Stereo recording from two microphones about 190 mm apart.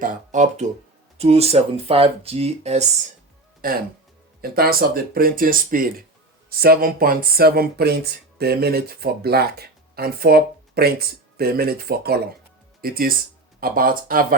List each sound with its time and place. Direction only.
0.0 s speech: 40° right (ahead or behind)
3.6 s speech: 50° right (ahead or behind)